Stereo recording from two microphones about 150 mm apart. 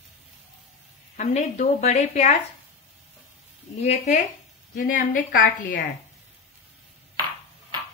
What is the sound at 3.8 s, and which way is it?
Speech, 50° left (ahead or behind).